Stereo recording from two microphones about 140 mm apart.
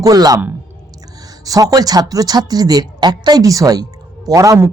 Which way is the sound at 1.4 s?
25° right (ahead or behind).